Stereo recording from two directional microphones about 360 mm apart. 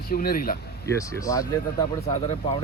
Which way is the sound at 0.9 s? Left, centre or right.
Centre.